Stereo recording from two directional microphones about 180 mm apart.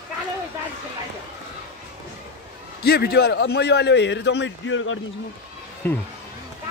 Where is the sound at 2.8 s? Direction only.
60° left (ahead or behind); by 5.0 s 90° left.